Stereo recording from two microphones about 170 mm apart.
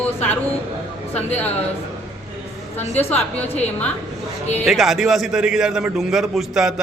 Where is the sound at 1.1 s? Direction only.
10° left (ahead or behind).